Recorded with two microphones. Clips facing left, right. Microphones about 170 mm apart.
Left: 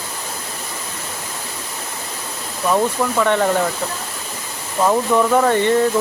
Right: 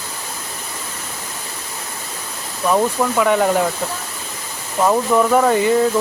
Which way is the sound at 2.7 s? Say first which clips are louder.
Right 1 dB; 5° right (ahead or behind).